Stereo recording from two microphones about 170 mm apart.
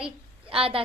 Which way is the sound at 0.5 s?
35° right (ahead or behind).